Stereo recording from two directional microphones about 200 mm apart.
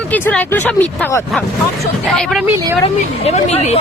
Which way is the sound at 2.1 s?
Centre (ahead or behind).